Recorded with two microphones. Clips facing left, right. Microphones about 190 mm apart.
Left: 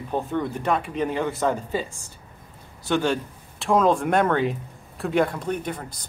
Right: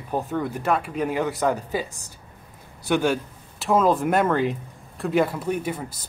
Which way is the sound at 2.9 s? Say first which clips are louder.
Right 1 dB; 10° right (ahead or behind).